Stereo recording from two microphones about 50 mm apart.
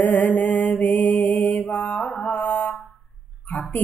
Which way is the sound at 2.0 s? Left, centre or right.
Left.